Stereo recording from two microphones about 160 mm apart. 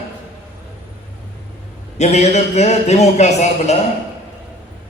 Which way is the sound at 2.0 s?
45° left (ahead or behind).